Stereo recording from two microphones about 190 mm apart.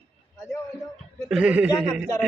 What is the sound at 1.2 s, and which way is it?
Speech, 5° right (ahead or behind).